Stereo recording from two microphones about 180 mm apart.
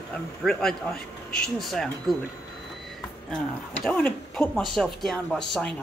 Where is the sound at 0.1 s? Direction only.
Centre (ahead or behind).